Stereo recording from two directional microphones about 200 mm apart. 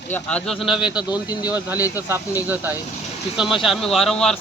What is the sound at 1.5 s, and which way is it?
A man's voice, 10° right (ahead or behind).